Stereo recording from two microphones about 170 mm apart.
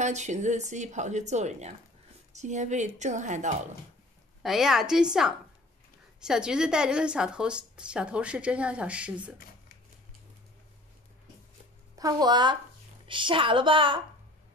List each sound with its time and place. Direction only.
0.0 s a woman's voice: 45° right (ahead or behind)
4.4 s a woman's voice: centre (ahead or behind)
11.9 s a woman's voice: 20° right (ahead or behind)